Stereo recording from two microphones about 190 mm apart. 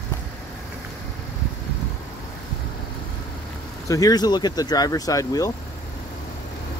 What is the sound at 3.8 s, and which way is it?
Speech, 20° left (ahead or behind).